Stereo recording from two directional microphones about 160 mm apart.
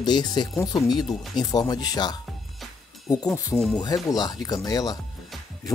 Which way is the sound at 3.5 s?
Centre (ahead or behind).